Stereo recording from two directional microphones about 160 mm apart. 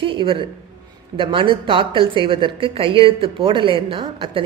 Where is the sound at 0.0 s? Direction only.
30° right (ahead or behind).